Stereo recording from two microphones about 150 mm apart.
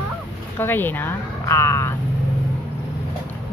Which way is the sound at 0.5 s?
15° left (ahead or behind).